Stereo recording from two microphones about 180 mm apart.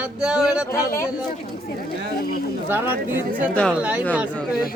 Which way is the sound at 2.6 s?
10° right (ahead or behind).